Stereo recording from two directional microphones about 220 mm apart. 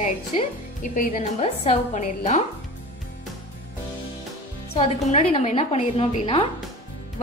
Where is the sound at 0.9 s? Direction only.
30° left (ahead or behind).